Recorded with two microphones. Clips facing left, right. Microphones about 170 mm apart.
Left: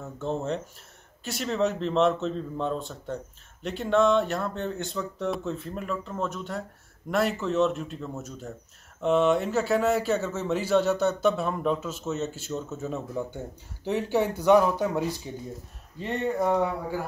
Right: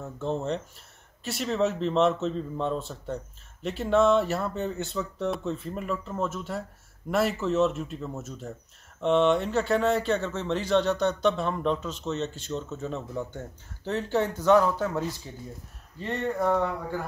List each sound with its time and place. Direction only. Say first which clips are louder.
0.0 s speech: even; centre (ahead or behind)